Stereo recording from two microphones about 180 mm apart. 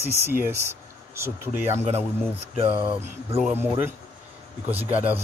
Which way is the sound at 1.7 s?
35° right (ahead or behind).